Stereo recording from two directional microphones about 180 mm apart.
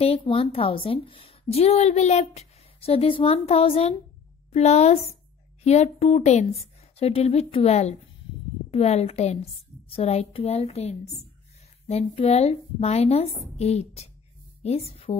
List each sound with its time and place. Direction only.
0.0 s a woman's voice: 30° left (ahead or behind)